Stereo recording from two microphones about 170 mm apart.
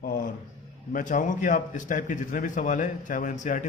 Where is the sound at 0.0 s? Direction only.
60° left (ahead or behind).